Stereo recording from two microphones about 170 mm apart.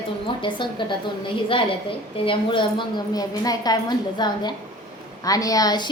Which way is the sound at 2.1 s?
30° left (ahead or behind).